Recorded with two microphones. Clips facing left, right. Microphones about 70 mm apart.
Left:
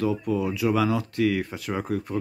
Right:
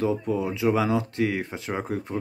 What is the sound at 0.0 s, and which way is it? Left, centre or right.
Speech, right.